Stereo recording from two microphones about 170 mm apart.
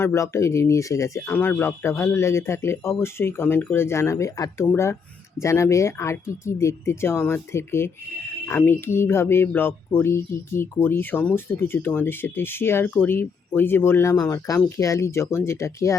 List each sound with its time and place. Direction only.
0.0 s speech: 15° left (ahead or behind)